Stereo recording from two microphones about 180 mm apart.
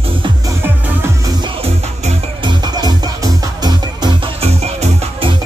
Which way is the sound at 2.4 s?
20° right (ahead or behind).